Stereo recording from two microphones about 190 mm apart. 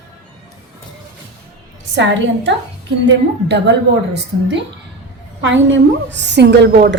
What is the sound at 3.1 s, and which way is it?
A woman's voice, 65° right (ahead or behind).